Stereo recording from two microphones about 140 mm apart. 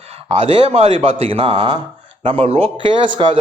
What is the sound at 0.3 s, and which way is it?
A man's voice, 40° right (ahead or behind).